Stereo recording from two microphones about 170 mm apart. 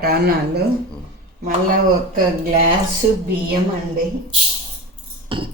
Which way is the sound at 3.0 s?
55° right (ahead or behind).